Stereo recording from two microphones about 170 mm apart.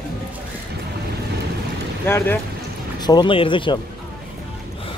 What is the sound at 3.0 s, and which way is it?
Speech, 25° left (ahead or behind).